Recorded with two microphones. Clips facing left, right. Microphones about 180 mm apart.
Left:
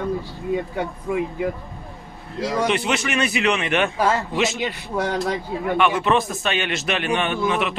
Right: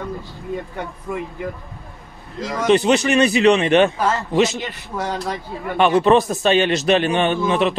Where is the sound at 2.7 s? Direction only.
35° right (ahead or behind).